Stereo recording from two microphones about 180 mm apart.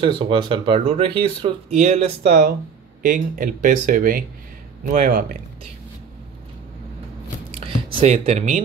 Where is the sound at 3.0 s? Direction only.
50° right (ahead or behind).